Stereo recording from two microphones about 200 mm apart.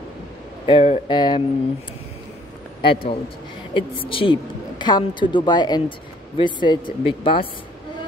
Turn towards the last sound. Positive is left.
turn(degrees=25)  # may be behind; listen again after turning